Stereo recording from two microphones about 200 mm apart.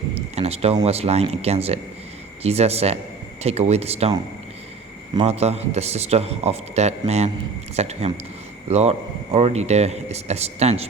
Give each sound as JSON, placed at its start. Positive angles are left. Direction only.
{"t": 0.1, "sound": "speech", "side_deg": -30}
{"t": 5.1, "sound": "speech", "side_deg": -30}